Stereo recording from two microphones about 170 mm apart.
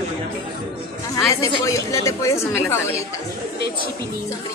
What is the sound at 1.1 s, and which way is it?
A woman's voice, 20° left (ahead or behind).